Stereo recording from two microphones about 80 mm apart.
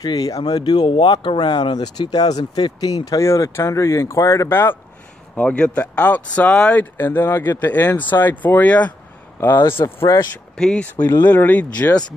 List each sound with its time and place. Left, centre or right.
0.0 s speech: left
0.4 s speech: left
4.5 s speech: left
9.8 s speech: left
10.5 s speech: centre
11.2 s speech: left